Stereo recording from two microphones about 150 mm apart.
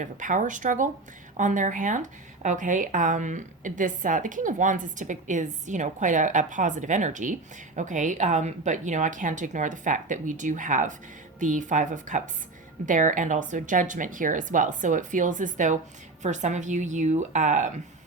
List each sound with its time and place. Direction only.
0.0 s a woman's voice: 60° right (ahead or behind)